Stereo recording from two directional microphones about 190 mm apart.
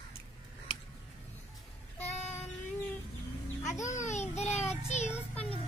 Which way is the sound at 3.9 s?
40° left (ahead or behind).